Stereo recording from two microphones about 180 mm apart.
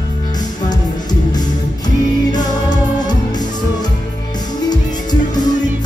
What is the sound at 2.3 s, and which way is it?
Music, 25° left (ahead or behind).